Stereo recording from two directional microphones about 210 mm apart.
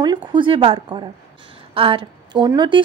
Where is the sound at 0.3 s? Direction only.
25° right (ahead or behind).